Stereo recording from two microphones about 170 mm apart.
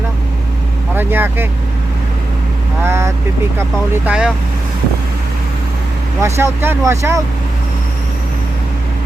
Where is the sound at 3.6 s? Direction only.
10° right (ahead or behind).